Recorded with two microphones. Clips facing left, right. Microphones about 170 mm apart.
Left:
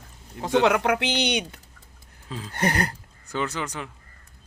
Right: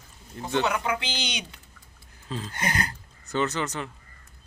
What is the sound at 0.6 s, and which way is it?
Speech, 75° left (ahead or behind).